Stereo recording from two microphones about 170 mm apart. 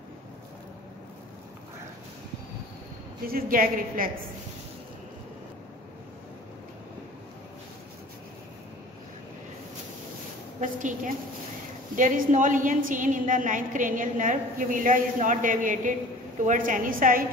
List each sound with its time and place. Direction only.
3.3 s a woman's voice: 60° right (ahead or behind)
10.6 s a woman's voice: 50° right (ahead or behind)